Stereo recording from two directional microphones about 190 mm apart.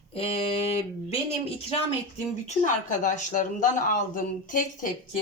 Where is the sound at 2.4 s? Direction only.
40° left (ahead or behind).